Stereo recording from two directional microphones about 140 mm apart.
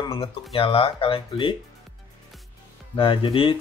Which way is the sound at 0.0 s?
40° left (ahead or behind).